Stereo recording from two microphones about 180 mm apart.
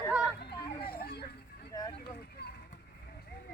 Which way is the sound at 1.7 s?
20° left (ahead or behind).